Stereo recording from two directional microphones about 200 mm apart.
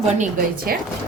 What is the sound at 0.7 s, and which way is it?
Speech, 45° right (ahead or behind).